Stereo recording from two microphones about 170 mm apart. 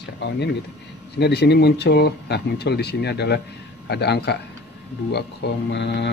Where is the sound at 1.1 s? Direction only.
80° left.